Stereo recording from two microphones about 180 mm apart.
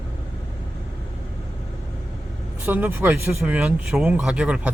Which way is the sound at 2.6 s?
10° right (ahead or behind).